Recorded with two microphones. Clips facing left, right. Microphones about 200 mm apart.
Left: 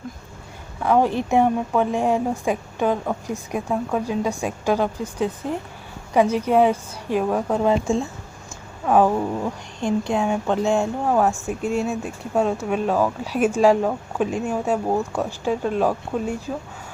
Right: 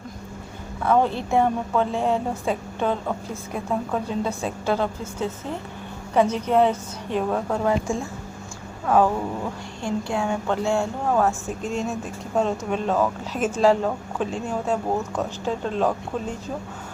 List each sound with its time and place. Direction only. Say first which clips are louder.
0.9 s a woman's voice: left 2 dB; 15° left (ahead or behind)